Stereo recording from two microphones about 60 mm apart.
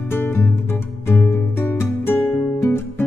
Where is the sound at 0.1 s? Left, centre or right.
Left.